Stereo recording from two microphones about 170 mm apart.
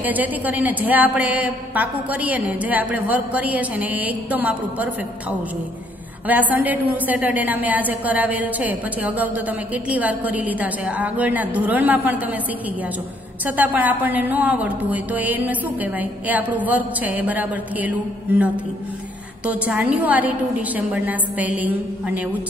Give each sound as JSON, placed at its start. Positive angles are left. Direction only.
{"t": 0.0, "sound": "a woman's voice", "side_deg": -10}
{"t": 6.2, "sound": "a woman's voice", "side_deg": -10}
{"t": 13.5, "sound": "a woman's voice", "side_deg": -10}